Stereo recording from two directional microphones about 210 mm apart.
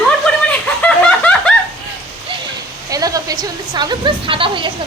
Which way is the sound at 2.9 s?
15° right (ahead or behind).